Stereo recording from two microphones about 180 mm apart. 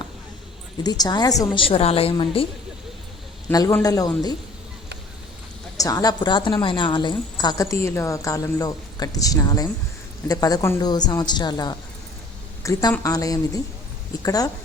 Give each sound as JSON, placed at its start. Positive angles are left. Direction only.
{"t": 0.8, "sound": "a woman's voice", "side_deg": 20}
{"t": 1.6, "sound": "a woman's voice", "side_deg": 35}
{"t": 3.5, "sound": "a woman's voice", "side_deg": 20}
{"t": 5.7, "sound": "a woman's voice", "side_deg": 20}